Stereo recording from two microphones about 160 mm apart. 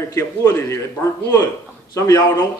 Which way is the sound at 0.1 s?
20° left (ahead or behind).